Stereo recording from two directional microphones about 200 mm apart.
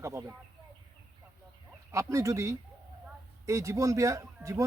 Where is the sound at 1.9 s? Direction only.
15° right (ahead or behind).